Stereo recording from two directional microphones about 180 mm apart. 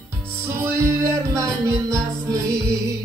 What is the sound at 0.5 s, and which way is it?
Music, 15° right (ahead or behind).